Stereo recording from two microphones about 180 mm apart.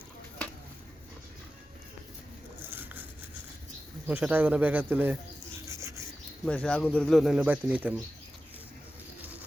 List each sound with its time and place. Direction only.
2.6 s vehicle: 10° right (ahead or behind)
4.0 s speech: 10° right (ahead or behind)
5.6 s rub: 15° right (ahead or behind)
6.4 s speech: 5° left (ahead or behind)